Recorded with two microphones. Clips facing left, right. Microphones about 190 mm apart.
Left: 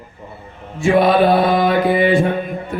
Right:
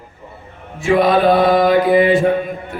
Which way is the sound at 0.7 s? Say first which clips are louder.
Left 1 dB; centre (ahead or behind).